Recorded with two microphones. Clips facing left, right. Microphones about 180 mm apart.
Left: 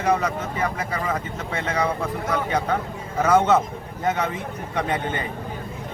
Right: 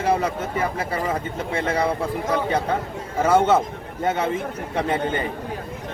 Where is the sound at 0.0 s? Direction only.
30° right (ahead or behind).